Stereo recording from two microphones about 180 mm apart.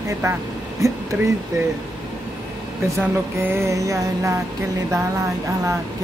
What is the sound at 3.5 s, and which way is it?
Music, 15° right (ahead or behind).